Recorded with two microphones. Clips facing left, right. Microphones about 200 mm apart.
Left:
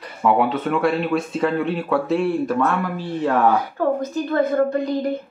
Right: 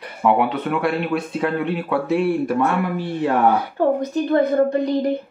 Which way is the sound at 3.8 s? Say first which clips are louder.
Right 2 dB; 25° right (ahead or behind).